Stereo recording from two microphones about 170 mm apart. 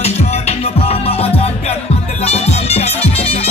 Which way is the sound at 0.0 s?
40° left (ahead or behind).